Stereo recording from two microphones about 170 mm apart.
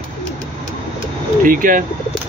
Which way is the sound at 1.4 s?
55° right (ahead or behind).